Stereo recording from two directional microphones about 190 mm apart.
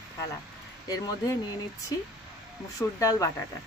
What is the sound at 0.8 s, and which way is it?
Speech, 20° left (ahead or behind).